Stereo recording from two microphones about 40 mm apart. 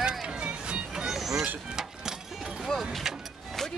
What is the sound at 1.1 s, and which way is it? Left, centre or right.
Vehicle, centre.